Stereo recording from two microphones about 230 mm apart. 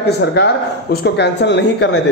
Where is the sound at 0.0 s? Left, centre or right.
Left.